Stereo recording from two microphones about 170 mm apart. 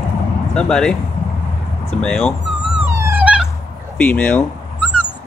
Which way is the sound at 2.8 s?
15° right (ahead or behind).